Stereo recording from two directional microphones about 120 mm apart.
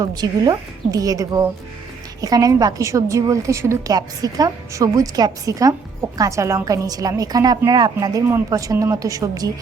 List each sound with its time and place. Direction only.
0.0 s a woman's voice: 35° right (ahead or behind)